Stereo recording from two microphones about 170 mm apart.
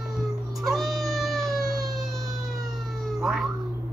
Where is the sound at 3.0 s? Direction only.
Centre (ahead or behind).